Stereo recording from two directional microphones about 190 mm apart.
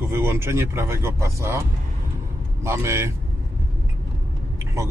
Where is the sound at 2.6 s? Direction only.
15° right (ahead or behind).